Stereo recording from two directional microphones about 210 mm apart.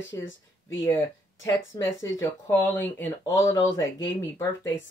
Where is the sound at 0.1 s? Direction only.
15° left (ahead or behind).